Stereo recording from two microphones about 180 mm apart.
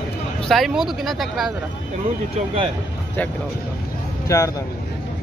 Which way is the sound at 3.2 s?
10° left (ahead or behind).